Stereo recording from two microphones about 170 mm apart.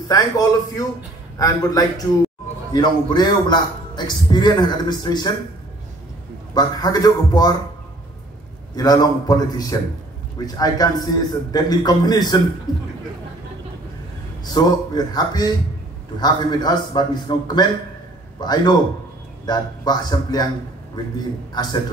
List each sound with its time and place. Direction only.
0.1 s a man's voice: 20° left (ahead or behind)
6.5 s a man's voice: 25° left (ahead or behind)
8.7 s a man's voice: 20° left (ahead or behind)
14.4 s a man's voice: 25° left (ahead or behind)